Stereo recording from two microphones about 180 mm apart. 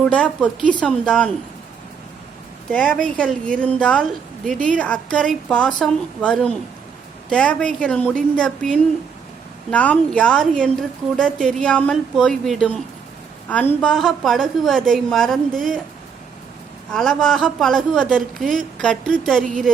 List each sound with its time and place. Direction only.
0.0 s a woman's voice: 5° left (ahead or behind)
2.7 s a woman's voice: 5° left (ahead or behind)
16.9 s a woman's voice: 5° left (ahead or behind)
19.4 s speech: 45° right (ahead or behind)